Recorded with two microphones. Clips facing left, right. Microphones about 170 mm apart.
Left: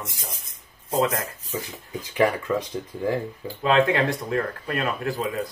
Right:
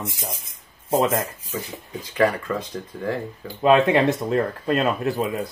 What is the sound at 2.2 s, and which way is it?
Speech, 20° left (ahead or behind).